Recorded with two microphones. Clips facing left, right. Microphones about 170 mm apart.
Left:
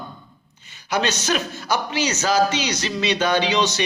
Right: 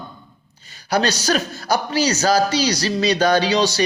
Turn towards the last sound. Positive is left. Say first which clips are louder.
# right 3 dB
turn(degrees=-35)  # may be behind; listen again after turning